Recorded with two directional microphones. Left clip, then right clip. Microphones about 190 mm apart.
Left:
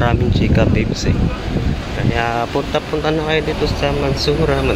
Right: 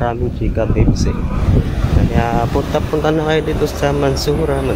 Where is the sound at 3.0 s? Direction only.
15° right (ahead or behind).